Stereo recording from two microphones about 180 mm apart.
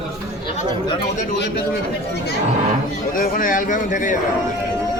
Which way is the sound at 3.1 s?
50° left (ahead or behind).